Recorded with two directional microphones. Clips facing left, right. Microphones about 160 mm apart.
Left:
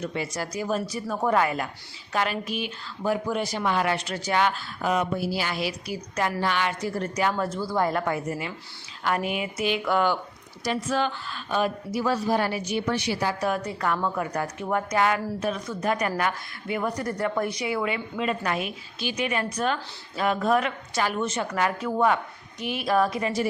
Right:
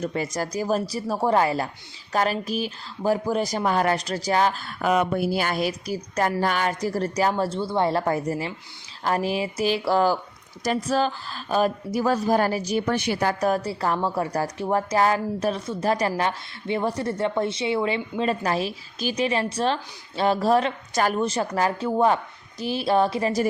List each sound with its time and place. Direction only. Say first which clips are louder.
0.0 s speech: right 3 dB; 45° right (ahead or behind)
4.6 s a woman's voice: right 3 dB; 60° right (ahead or behind); by 13.6 s 45° right (ahead or behind)
13.6 s speech: right 2 dB; 30° right (ahead or behind)